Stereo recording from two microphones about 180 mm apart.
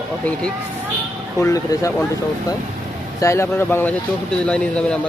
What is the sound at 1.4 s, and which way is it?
Speech, 15° left (ahead or behind).